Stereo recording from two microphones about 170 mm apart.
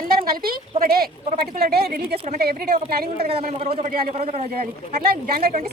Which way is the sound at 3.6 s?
35° right (ahead or behind).